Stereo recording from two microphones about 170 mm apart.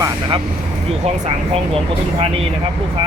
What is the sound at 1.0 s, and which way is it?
Speech, 40° right (ahead or behind).